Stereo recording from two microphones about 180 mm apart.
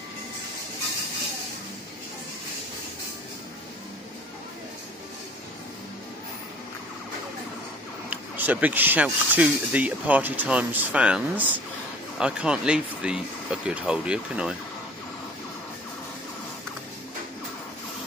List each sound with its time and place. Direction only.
8.1 s speech: 10° right (ahead or behind)